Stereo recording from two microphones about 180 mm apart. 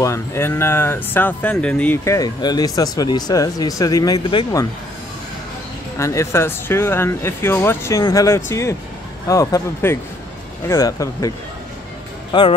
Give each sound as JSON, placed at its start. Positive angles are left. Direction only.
{"t": 0.0, "sound": "speech", "side_deg": 15}
{"t": 5.9, "sound": "speech", "side_deg": 15}